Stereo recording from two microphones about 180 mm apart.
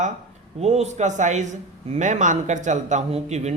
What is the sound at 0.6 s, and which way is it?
Speech, 35° right (ahead or behind).